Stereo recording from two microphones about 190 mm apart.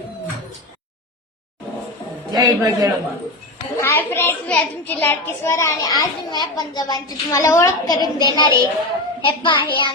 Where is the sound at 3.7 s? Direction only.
15° left (ahead or behind).